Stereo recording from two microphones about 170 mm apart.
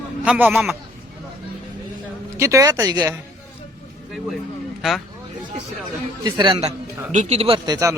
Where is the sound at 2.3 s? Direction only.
15° right (ahead or behind).